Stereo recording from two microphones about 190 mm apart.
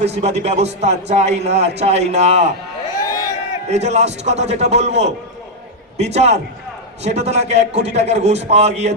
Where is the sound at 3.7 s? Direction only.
35° right (ahead or behind).